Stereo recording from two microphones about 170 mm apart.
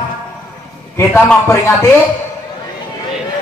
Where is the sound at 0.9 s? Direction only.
10° left (ahead or behind).